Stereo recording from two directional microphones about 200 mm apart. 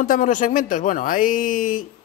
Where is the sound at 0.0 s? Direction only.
40° left (ahead or behind).